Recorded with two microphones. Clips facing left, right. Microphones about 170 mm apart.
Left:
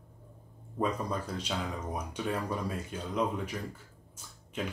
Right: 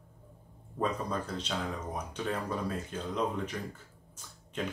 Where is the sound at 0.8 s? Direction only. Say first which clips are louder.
Left 1 dB; 10° left (ahead or behind).